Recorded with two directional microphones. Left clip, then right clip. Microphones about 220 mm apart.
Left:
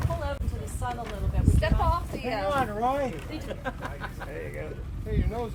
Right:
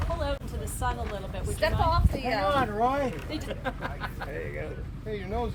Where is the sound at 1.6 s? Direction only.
30° right (ahead or behind).